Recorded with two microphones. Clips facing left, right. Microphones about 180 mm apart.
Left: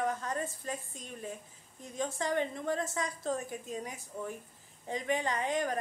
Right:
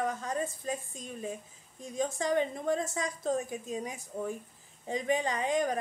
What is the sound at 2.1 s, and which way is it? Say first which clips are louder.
A woman's voice: right 2 dB; 15° right (ahead or behind).